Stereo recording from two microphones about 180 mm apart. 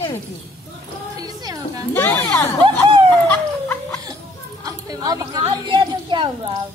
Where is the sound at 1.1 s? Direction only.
20° right (ahead or behind).